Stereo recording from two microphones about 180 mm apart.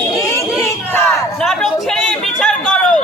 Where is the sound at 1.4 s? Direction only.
Centre (ahead or behind).